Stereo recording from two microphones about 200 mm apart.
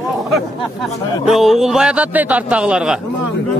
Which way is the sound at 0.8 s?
Centre (ahead or behind).